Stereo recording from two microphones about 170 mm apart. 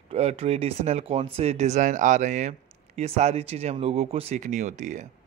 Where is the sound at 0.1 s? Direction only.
35° right (ahead or behind).